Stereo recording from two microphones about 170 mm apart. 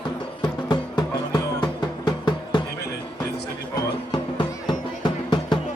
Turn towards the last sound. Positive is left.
turn(degrees=25)  # may be behind; listen again after turning